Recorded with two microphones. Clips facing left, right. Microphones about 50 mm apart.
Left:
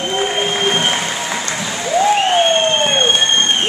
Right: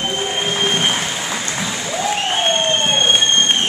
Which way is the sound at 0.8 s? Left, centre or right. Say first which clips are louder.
Left 2 dB; centre.